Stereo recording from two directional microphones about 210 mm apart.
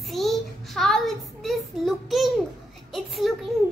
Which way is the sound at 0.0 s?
Centre (ahead or behind).